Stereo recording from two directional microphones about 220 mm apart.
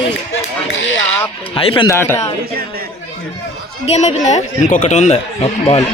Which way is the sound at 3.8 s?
30° left (ahead or behind).